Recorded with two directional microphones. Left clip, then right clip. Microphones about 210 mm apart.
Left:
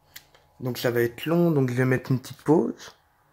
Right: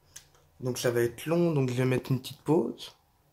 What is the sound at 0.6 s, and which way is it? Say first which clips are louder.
Speech: left 3 dB; 35° left (ahead or behind).